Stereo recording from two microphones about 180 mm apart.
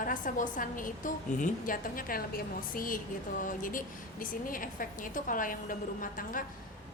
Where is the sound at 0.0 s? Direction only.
45° left (ahead or behind).